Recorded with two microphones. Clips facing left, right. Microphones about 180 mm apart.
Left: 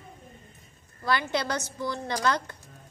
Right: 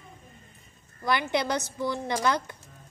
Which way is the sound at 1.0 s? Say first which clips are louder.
Right 1 dB; 15° right (ahead or behind).